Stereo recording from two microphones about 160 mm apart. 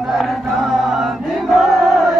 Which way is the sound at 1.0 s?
Centre (ahead or behind).